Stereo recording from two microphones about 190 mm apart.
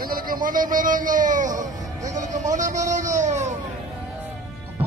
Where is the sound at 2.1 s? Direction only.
40° right (ahead or behind).